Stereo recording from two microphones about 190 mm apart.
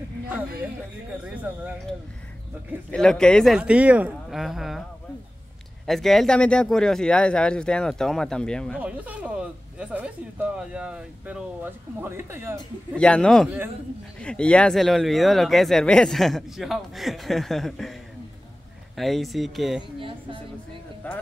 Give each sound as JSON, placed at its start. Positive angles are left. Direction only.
{"t": 1.2, "sound": "speech", "side_deg": -10}
{"t": 2.9, "sound": "speech", "side_deg": 5}
{"t": 5.9, "sound": "speech", "side_deg": 0}
{"t": 8.7, "sound": "speech", "side_deg": -10}
{"t": 12.9, "sound": "speech", "side_deg": 5}
{"t": 18.9, "sound": "speech", "side_deg": 0}
{"t": 20.0, "sound": "a woman's voice", "side_deg": -25}
{"t": 21.0, "sound": "speech", "side_deg": 10}